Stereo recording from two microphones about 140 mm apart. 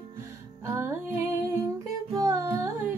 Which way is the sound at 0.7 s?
15° right (ahead or behind).